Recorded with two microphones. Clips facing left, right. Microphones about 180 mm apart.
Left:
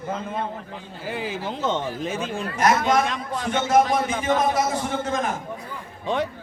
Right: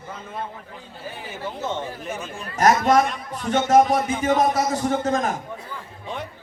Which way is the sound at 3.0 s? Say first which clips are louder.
Left 3 dB; 90° left.